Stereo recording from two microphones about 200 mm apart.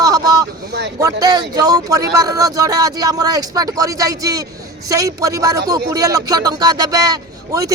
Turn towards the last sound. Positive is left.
turn(degrees=-15)  # may be behind; listen again after turning